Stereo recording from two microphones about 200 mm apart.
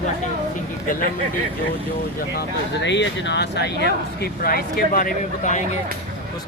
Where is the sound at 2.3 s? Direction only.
55° left (ahead or behind).